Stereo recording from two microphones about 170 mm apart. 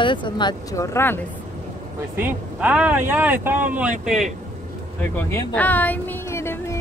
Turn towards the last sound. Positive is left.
turn(degrees=15)  # may be behind; listen again after turning